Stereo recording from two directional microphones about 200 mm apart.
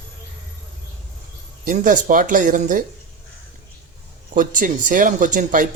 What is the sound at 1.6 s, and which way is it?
Speech, 40° right (ahead or behind).